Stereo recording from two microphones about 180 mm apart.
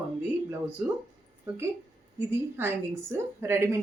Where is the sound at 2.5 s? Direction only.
15° right (ahead or behind).